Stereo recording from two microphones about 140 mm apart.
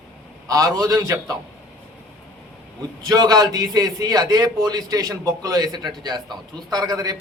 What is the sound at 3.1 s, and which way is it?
A man's voice, 25° right (ahead or behind).